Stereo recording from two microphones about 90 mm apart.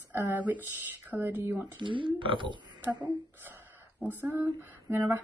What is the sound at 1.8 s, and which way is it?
Speech, 65° right (ahead or behind).